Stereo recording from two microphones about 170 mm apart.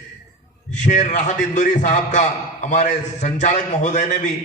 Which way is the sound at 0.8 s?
45° left (ahead or behind).